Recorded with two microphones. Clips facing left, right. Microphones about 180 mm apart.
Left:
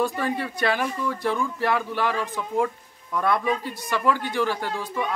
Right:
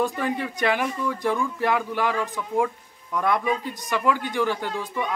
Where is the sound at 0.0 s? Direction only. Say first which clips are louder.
Even; 15° right (ahead or behind).